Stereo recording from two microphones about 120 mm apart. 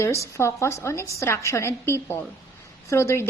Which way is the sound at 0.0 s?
25° left (ahead or behind).